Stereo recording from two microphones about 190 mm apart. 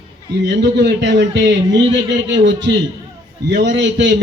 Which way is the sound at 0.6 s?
65° right (ahead or behind).